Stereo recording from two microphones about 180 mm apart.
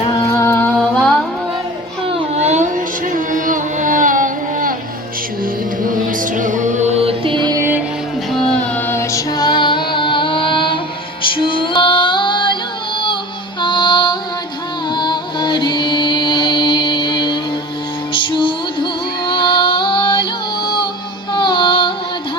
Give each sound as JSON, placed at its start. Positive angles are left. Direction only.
{"t": 0.1, "sound": "music", "side_deg": 15}
{"t": 0.8, "sound": "music", "side_deg": 5}
{"t": 2.0, "sound": "music", "side_deg": -40}
{"t": 5.8, "sound": "music", "side_deg": -50}
{"t": 8.3, "sound": "female singing", "side_deg": 5}
{"t": 11.2, "sound": "music", "side_deg": 30}
{"t": 13.6, "sound": "female singing", "side_deg": 25}
{"t": 14.9, "sound": "music", "side_deg": 25}
{"t": 21.3, "sound": "music", "side_deg": 25}